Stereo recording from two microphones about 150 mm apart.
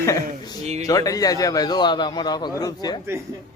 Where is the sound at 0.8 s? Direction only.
25° left (ahead or behind).